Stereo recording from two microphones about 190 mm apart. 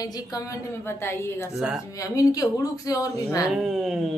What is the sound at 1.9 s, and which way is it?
Speech, 15° left (ahead or behind).